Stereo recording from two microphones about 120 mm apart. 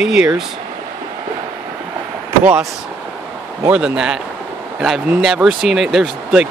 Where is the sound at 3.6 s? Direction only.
10° right (ahead or behind).